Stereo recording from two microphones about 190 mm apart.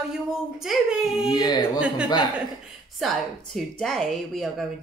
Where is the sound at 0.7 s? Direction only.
Centre (ahead or behind).